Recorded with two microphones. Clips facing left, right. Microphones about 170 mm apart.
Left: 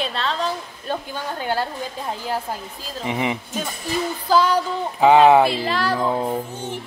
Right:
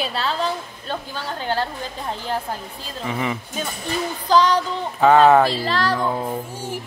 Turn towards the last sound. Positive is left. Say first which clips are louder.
# even
turn(degrees=-10)  # may be behind; listen again after turning